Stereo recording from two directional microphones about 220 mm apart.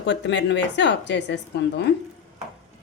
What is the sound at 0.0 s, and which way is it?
A woman's voice, 55° left (ahead or behind).